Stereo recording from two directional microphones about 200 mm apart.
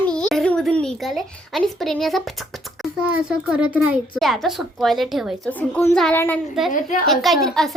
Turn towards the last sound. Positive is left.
turn(degrees=0)  # may be behind; listen again after turning